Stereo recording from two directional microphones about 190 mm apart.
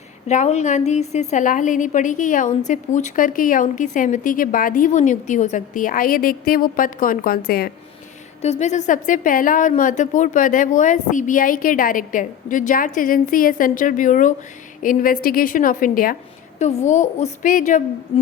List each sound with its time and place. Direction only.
0.3 s a woman's voice: 35° left (ahead or behind); by 7.7 s 55° left (ahead or behind)
8.4 s a woman's voice: 35° left (ahead or behind)